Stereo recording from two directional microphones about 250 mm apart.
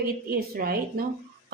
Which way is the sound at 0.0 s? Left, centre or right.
Right.